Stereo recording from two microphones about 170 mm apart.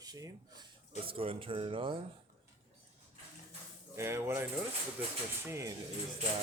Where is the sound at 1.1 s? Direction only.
35° right (ahead or behind).